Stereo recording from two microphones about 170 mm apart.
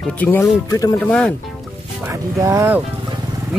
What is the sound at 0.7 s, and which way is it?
Speech, 20° left (ahead or behind).